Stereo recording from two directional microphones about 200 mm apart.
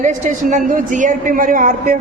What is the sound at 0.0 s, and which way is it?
A woman's voice, 40° right (ahead or behind).